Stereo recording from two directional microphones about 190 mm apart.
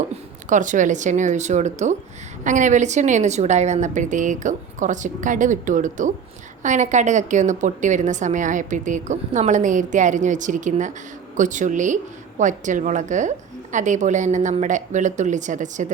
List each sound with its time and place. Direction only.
0.4 s a woman's voice: 40° right (ahead or behind)